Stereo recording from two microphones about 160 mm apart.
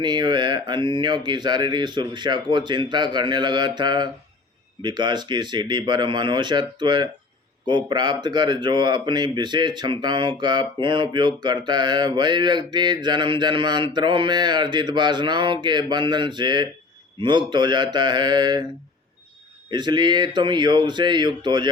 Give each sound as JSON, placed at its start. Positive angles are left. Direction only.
{"t": 0.0, "sound": "speech", "side_deg": -30}
{"t": 19.7, "sound": "speech", "side_deg": -30}